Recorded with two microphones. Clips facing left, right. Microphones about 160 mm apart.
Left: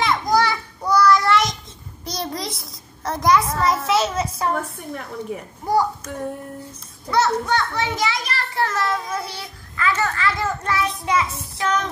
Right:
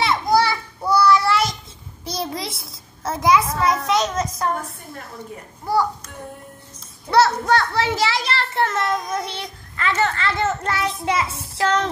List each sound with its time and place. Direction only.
0.0 s a sound: 5° right (ahead or behind)
2.0 s a child's voice: centre (ahead or behind); by 5.9 s 15° left (ahead or behind)
7.1 s a child's voice: 35° right (ahead or behind)